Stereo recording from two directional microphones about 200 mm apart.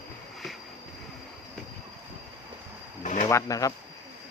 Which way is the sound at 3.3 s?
15° left (ahead or behind).